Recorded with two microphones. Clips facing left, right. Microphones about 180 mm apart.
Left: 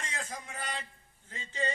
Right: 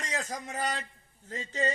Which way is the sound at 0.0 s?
40° right (ahead or behind).